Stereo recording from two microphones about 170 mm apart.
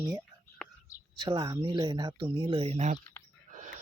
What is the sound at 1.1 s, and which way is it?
Speech, 25° right (ahead or behind).